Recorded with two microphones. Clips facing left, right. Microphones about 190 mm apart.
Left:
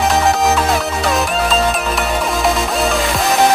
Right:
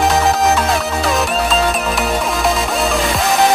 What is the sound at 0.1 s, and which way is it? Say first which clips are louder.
Music: even; centre (ahead or behind).